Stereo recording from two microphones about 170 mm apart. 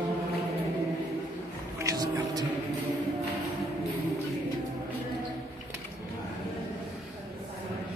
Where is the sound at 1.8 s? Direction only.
20° right (ahead or behind).